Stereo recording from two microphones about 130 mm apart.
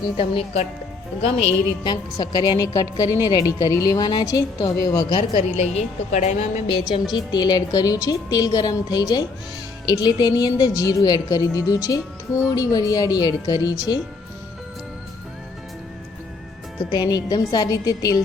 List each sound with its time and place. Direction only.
0.2 s speech: 50° left (ahead or behind)
1.8 s a woman's voice: 35° left (ahead or behind)
5.4 s a woman's voice: 55° left (ahead or behind)
6.7 s a woman's voice: 40° left (ahead or behind)
16.9 s a woman's voice: 30° left (ahead or behind)